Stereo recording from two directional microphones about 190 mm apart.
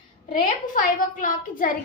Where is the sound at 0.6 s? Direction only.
45° left (ahead or behind).